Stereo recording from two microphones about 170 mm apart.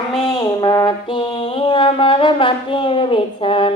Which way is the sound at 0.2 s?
25° left (ahead or behind).